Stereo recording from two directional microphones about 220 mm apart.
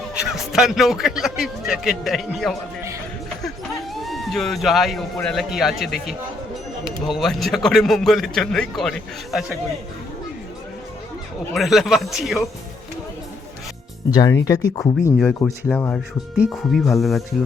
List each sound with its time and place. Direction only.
0.1 s a man's voice: 5° right (ahead or behind)
3.9 s a man's voice: centre (ahead or behind)
7.2 s a man's voice: centre (ahead or behind)
11.5 s a man's voice: centre (ahead or behind)
14.1 s speech: 20° left (ahead or behind)
15.2 s a man's voice: 5° left (ahead or behind)